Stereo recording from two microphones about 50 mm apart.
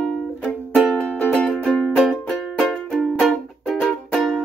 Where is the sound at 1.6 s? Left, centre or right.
Centre.